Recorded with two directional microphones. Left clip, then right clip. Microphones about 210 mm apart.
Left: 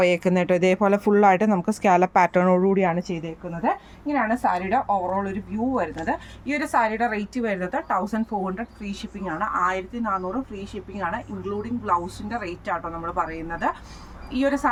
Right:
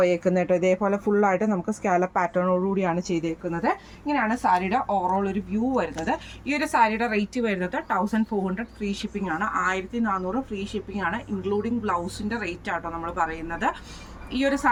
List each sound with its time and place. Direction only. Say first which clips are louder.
0.0 s speech: left 1 dB; 35° left (ahead or behind)
2.2 s speech: left 4 dB; 55° left (ahead or behind)
3.0 s a woman's voice: right 4 dB; 20° left (ahead or behind)